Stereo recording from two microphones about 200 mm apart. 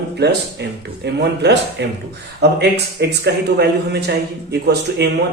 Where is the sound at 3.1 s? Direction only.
55° right (ahead or behind).